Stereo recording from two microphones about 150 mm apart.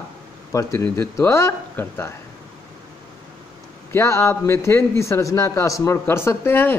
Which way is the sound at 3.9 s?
20° left (ahead or behind).